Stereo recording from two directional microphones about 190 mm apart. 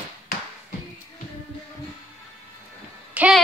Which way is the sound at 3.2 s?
5° right (ahead or behind).